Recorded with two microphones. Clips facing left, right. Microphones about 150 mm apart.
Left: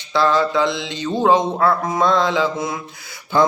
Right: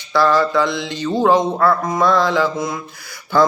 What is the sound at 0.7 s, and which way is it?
Mantra, 50° right (ahead or behind).